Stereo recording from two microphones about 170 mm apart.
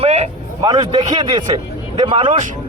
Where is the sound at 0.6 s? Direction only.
25° right (ahead or behind).